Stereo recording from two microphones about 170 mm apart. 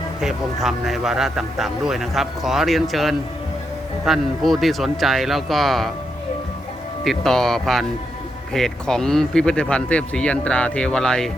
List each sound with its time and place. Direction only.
0.2 s speech: centre (ahead or behind)
7.0 s speech: centre (ahead or behind)